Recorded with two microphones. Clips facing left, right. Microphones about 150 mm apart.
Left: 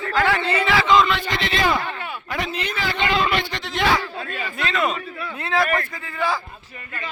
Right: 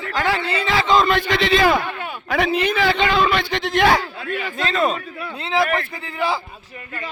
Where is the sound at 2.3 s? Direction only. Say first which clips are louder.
Right 9 dB; 60° right (ahead or behind).